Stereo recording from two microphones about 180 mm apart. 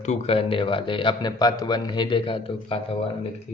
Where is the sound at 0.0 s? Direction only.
40° left (ahead or behind).